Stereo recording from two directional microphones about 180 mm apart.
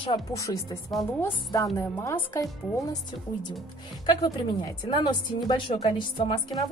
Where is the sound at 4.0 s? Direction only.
25° left (ahead or behind).